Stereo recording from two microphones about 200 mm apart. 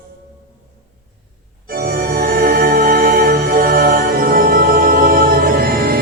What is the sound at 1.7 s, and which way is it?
Organ, 50° right (ahead or behind).